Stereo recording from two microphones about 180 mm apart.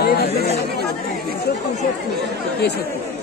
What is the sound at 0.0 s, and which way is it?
Speech, 60° left (ahead or behind).